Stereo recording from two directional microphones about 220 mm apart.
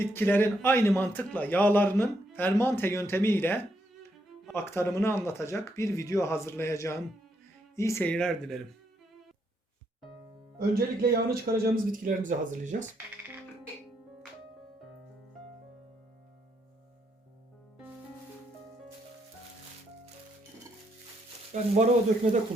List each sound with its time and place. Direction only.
0.0 s a man's voice: 10° left (ahead or behind)
10.6 s a man's voice: 45° right (ahead or behind)
21.5 s a man's voice: 30° right (ahead or behind)